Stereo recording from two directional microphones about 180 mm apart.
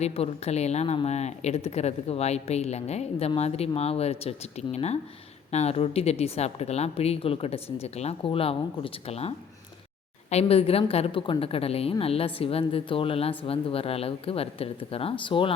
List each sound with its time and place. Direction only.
0.0 s speech: 35° left (ahead or behind)